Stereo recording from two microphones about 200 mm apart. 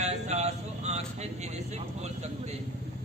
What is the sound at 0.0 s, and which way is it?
Vehicle, 35° right (ahead or behind).